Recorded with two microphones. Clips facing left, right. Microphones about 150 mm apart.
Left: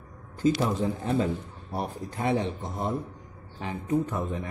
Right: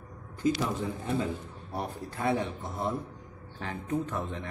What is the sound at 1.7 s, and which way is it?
A man's voice, 15° left (ahead or behind).